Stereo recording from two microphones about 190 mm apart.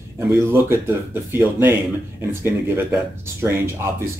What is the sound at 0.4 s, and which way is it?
Speech, 10° right (ahead or behind).